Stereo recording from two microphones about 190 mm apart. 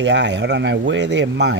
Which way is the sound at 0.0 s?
65° right (ahead or behind).